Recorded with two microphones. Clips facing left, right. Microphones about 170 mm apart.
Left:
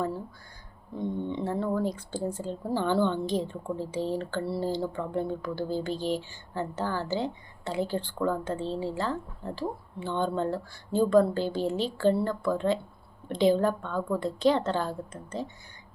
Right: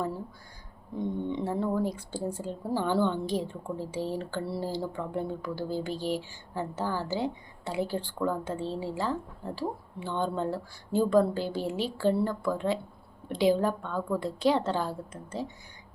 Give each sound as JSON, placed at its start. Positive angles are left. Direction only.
{"t": 0.9, "sound": "speech", "side_deg": -15}